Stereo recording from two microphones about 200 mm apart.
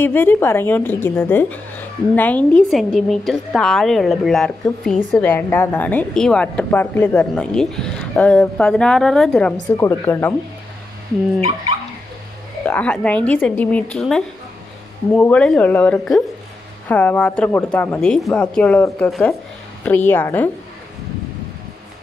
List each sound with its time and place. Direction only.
0.0 s a woman's voice: 10° left (ahead or behind)
12.6 s a woman's voice: 5° left (ahead or behind)